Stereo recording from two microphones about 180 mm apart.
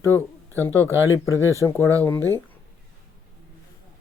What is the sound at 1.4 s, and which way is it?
Speech, 15° right (ahead or behind).